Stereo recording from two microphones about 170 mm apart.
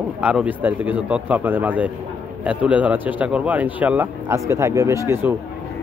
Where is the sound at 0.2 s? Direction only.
5° right (ahead or behind).